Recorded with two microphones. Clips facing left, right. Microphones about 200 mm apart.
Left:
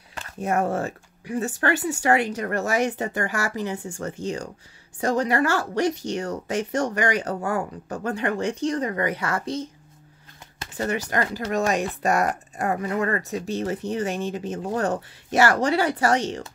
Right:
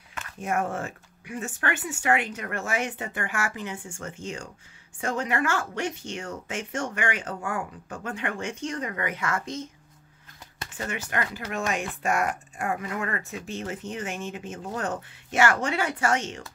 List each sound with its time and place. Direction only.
0.1 s speech: 35° left (ahead or behind)
10.8 s speech: 40° left (ahead or behind)